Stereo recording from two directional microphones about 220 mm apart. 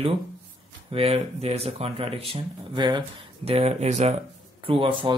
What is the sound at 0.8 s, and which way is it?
Speech, 25° right (ahead or behind).